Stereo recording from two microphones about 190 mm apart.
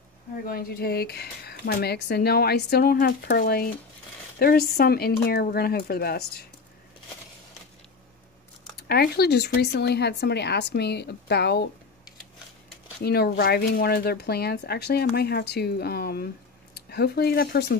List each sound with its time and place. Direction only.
0.5 s speech: 50° left (ahead or behind)
8.8 s speech: 55° left (ahead or behind)
13.0 s speech: 55° left (ahead or behind)